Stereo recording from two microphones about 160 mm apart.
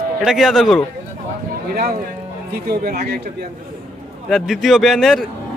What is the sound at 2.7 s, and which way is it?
Speech, 75° right (ahead or behind).